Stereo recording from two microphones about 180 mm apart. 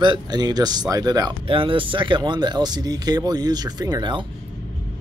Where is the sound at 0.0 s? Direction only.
25° right (ahead or behind).